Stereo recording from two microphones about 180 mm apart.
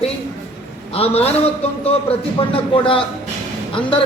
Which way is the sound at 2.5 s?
30° left (ahead or behind).